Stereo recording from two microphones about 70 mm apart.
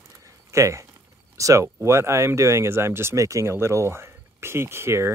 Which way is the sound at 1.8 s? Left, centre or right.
Right.